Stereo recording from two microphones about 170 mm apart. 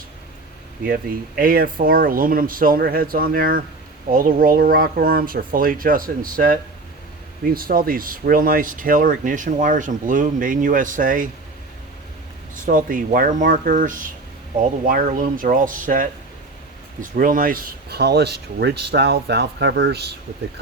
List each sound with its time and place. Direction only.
1.4 s speech: 60° right (ahead or behind)
12.6 s speech: 50° right (ahead or behind); by 20.1 s 75° right (ahead or behind)